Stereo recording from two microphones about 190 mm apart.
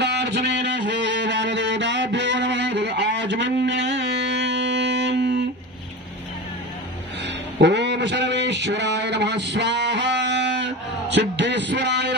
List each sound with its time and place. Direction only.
0.0 s music: 65° right (ahead or behind)
7.6 s a man's voice: 65° right (ahead or behind)